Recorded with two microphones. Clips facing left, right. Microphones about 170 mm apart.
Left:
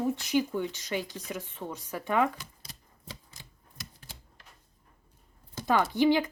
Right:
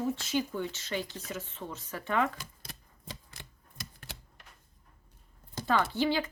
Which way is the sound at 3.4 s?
65° right (ahead or behind).